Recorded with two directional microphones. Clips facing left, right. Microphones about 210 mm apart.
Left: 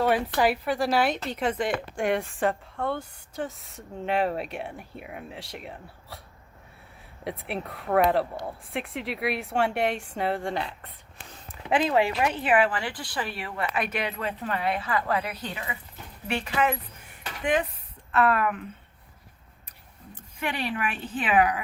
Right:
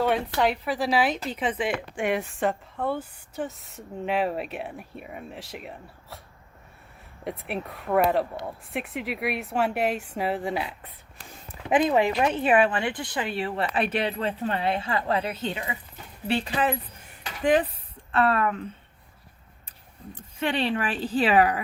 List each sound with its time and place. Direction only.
0.0 s a woman's voice: 5° left (ahead or behind)
7.3 s a woman's voice: centre (ahead or behind)
11.7 s speech: 20° right (ahead or behind)
20.4 s speech: 30° right (ahead or behind)